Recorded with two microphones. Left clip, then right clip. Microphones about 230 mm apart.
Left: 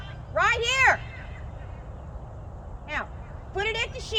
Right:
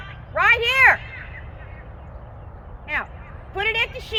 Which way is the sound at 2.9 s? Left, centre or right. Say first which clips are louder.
Right 6 dB; right.